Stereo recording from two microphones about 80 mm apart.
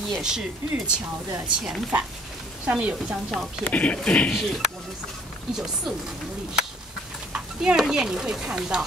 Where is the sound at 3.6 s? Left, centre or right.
Centre.